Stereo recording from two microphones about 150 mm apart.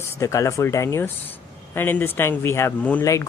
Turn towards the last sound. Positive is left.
turn(degrees=20)  # may be behind; listen again after turning